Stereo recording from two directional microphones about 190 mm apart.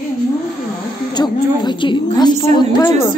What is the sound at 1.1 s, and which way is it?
A woman's voice, 20° left (ahead or behind).